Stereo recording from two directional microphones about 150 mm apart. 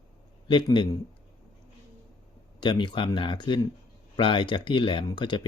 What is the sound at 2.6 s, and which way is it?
Speech, 30° left (ahead or behind).